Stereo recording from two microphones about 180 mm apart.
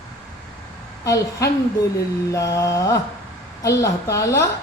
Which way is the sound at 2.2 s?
20° left (ahead or behind).